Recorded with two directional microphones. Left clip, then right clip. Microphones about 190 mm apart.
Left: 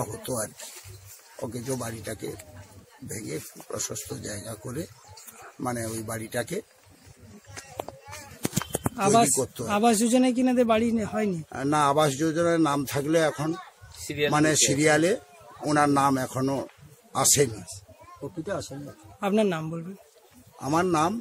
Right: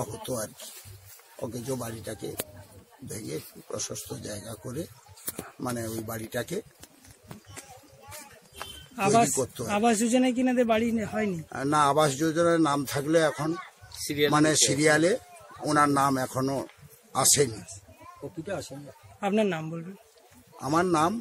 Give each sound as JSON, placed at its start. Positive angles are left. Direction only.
{"t": 0.0, "sound": "speech", "side_deg": 10}
{"t": 1.7, "sound": "speech", "side_deg": 10}
{"t": 3.3, "sound": "speech", "side_deg": 5}
{"t": 8.9, "sound": "speech", "side_deg": 5}
{"t": 14.0, "sound": "speech", "side_deg": -25}
{"t": 14.3, "sound": "speech", "side_deg": 0}
{"t": 18.4, "sound": "speech", "side_deg": 35}
{"t": 19.1, "sound": "speech", "side_deg": 10}